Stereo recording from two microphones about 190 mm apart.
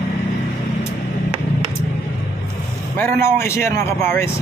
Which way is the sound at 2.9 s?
10° left (ahead or behind).